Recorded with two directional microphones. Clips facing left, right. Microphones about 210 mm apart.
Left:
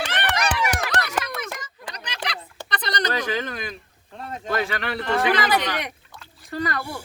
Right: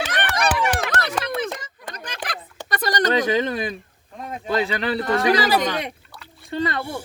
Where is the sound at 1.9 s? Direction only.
50° right (ahead or behind).